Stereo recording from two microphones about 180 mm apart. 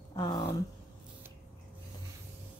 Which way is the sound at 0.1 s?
25° left (ahead or behind).